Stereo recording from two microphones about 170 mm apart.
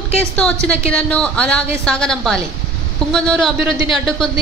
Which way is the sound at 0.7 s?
5° left (ahead or behind).